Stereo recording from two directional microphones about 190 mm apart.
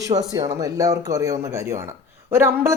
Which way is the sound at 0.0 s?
20° right (ahead or behind).